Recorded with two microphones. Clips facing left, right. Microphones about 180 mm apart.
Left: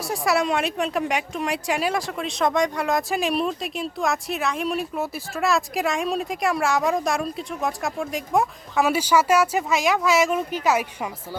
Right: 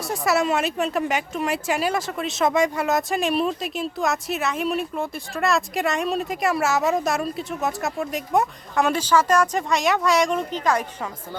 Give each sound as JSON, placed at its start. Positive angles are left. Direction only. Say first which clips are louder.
{"t": 0.1, "sound": "speech", "louder": "right 1 dB", "side_deg": 0}